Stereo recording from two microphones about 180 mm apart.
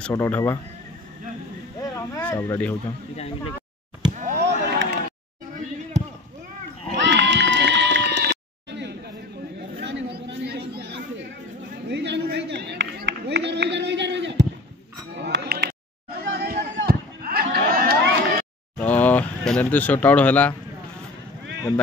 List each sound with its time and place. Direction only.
0.0 s speech: 10° left (ahead or behind)
1.8 s a sound: 15° left (ahead or behind)
4.1 s a sound: 45° right (ahead or behind)
4.4 s rowboat: 70° right (ahead or behind)
6.9 s run: 75° right (ahead or behind)
9.8 s chatter: 75° right (ahead or behind)
11.9 s speech: 70° right (ahead or behind)
15.1 s a sound: 70° right (ahead or behind)
18.8 s vehicle: 10° left (ahead or behind)